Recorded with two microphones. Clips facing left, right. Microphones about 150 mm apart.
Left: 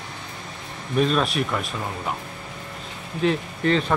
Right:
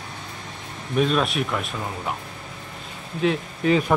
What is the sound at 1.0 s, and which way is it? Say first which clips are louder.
Speech: even; centre (ahead or behind).